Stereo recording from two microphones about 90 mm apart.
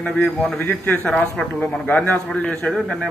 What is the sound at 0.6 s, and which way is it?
Speech, 20° left (ahead or behind).